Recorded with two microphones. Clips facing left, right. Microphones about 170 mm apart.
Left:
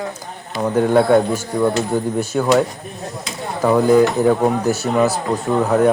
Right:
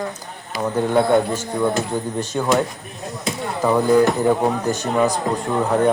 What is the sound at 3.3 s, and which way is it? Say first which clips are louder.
Chop: right 5 dB; 55° right (ahead or behind).